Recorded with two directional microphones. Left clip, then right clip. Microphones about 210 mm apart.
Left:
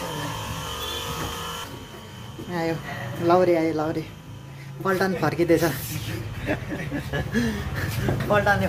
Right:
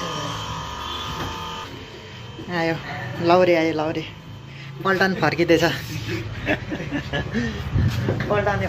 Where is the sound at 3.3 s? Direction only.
5° left (ahead or behind).